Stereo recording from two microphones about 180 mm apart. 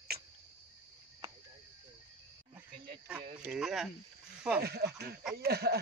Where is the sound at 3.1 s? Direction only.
5° right (ahead or behind).